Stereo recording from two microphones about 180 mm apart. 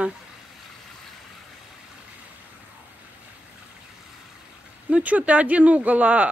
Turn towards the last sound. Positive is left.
turn(degrees=-10)  # may be behind; listen again after turning